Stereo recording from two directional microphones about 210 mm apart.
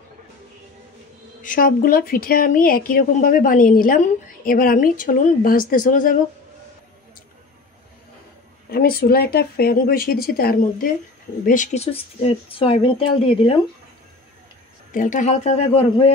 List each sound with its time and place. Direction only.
1.4 s a woman's voice: 40° left (ahead or behind)
8.6 s speech: 50° left (ahead or behind); by 13.6 s 25° left (ahead or behind)
14.9 s a woman's voice: 35° left (ahead or behind)